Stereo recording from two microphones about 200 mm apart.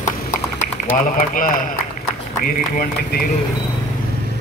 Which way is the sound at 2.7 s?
45° left (ahead or behind).